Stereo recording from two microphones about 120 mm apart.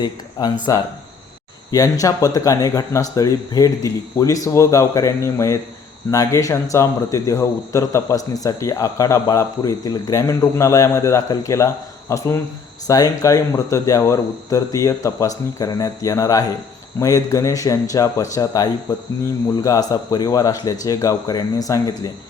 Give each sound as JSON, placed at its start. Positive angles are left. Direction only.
{"t": 0.0, "sound": "speech", "side_deg": 35}
{"t": 1.7, "sound": "speech", "side_deg": 30}